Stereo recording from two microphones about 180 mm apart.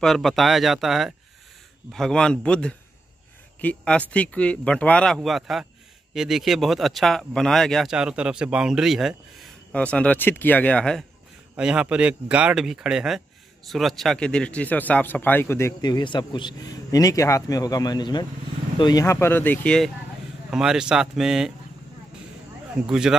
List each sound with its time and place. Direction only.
0.0 s a man's voice: centre (ahead or behind)
11.5 s a man's voice: 5° right (ahead or behind)
22.8 s speech: 5° right (ahead or behind)